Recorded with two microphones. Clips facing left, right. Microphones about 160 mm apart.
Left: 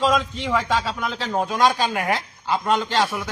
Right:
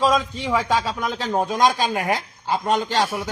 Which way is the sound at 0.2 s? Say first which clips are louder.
Right 1 dB; 10° right (ahead or behind).